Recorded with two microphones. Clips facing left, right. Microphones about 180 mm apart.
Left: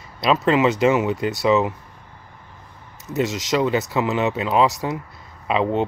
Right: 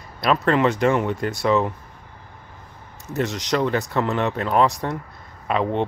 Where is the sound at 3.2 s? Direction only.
Centre (ahead or behind).